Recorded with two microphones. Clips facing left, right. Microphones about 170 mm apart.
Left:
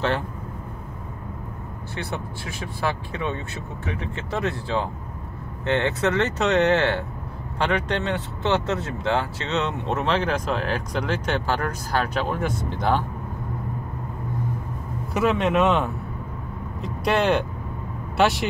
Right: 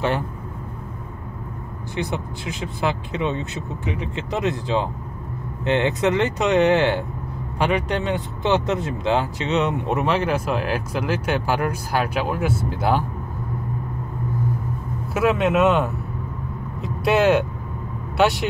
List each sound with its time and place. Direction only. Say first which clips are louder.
2.0 s speech: right 5 dB; 15° right (ahead or behind)
15.1 s speech: right 2 dB; centre (ahead or behind)